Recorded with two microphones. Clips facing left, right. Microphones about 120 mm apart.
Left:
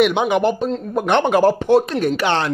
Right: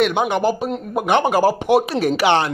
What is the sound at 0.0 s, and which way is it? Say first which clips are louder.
Speech: left 2 dB; centre (ahead or behind).